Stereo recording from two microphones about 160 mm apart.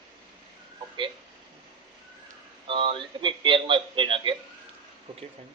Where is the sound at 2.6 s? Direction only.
30° right (ahead or behind).